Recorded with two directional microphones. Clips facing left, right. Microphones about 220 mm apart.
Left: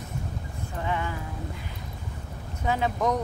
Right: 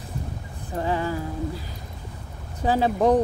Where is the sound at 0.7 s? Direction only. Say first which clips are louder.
Right 6 dB; 35° right (ahead or behind).